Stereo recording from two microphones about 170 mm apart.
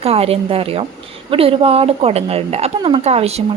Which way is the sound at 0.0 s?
35° right (ahead or behind).